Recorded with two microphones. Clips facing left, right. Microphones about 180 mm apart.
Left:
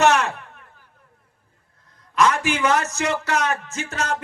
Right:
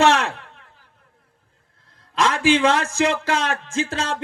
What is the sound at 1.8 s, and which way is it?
A man's voice, 30° right (ahead or behind).